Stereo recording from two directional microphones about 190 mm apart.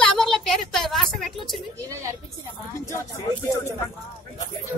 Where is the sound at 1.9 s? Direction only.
15° right (ahead or behind).